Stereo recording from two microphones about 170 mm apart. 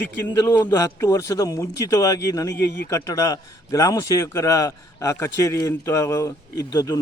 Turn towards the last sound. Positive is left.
turn(degrees=20)  # may be behind; listen again after turning